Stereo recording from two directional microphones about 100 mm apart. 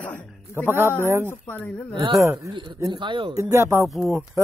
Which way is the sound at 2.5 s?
50° right (ahead or behind).